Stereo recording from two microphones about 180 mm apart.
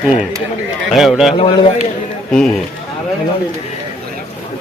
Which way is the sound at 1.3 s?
30° left (ahead or behind).